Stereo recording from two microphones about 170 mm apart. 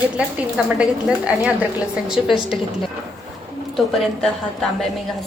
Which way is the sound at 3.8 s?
Centre (ahead or behind).